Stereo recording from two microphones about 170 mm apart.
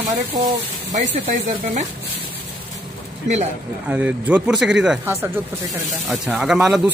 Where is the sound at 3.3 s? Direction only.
45° right (ahead or behind).